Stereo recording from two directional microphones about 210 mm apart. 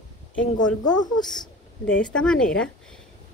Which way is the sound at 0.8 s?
20° left (ahead or behind).